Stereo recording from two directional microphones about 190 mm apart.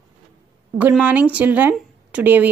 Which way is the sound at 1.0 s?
10° right (ahead or behind).